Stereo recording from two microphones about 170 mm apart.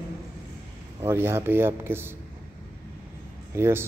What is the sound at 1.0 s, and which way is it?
A man's voice, 15° right (ahead or behind).